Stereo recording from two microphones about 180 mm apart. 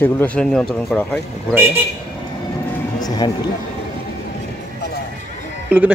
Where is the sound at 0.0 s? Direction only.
10° left (ahead or behind).